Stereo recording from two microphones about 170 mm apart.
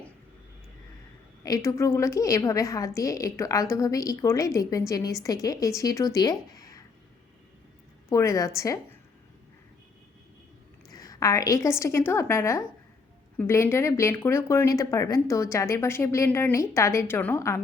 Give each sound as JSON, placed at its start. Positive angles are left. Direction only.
{"t": 1.5, "sound": "a woman's voice", "side_deg": 20}
{"t": 8.1, "sound": "speech", "side_deg": 20}
{"t": 10.8, "sound": "a woman's voice", "side_deg": 20}